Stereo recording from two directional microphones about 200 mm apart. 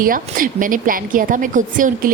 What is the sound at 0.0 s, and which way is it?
A woman's voice, 45° right (ahead or behind).